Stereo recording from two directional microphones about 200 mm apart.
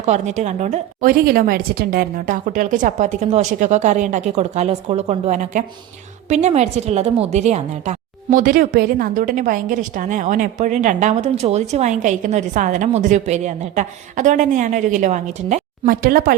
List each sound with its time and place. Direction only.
0.0 s a woman's voice: 35° right (ahead or behind)